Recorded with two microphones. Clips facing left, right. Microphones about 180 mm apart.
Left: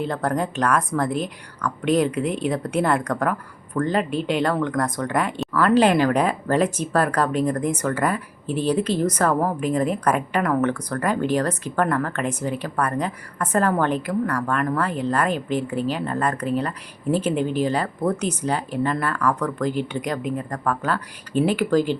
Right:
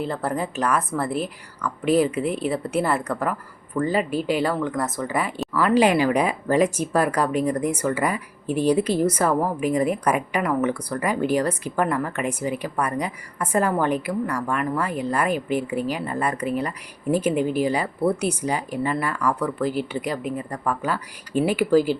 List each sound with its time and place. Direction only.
0.0 s a woman's voice: 5° right (ahead or behind)